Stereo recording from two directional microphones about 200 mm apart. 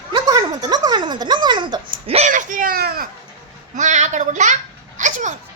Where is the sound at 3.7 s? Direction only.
35° right (ahead or behind).